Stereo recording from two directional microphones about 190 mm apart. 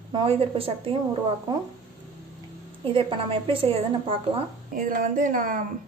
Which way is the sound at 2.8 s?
30° right (ahead or behind).